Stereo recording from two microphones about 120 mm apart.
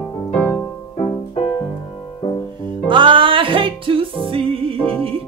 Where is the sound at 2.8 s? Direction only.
45° right (ahead or behind).